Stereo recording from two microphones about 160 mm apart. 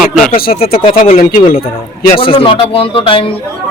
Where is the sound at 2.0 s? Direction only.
35° left (ahead or behind).